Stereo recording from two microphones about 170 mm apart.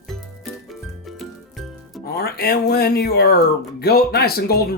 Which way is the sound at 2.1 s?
65° left (ahead or behind).